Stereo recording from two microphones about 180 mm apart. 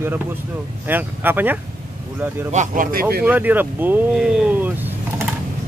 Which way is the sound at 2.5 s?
45° right (ahead or behind).